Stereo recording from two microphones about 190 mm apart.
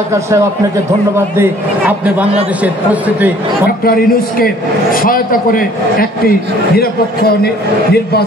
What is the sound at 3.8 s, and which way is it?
A man's voice, 50° left (ahead or behind).